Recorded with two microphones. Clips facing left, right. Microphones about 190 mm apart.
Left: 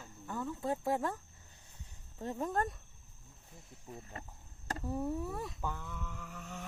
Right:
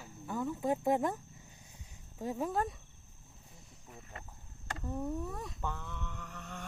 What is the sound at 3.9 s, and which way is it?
Speech, 30° left (ahead or behind).